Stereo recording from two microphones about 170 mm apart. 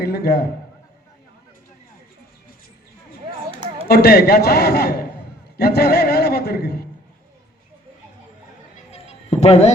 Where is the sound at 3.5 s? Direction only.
35° right (ahead or behind).